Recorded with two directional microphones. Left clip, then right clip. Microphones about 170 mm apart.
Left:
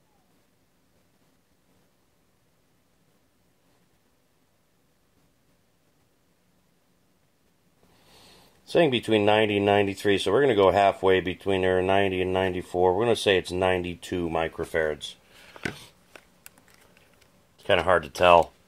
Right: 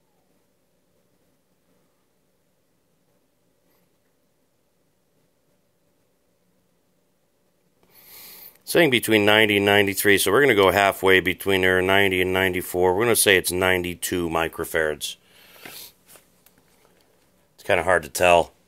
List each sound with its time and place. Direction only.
8.1 s speech: 20° right (ahead or behind)
17.6 s speech: 45° right (ahead or behind)